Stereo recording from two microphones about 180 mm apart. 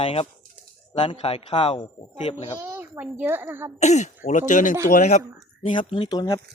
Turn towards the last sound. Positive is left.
turn(degrees=20)  # may be behind; listen again after turning